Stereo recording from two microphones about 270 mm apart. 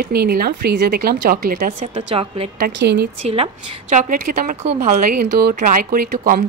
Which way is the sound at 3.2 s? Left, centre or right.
Right.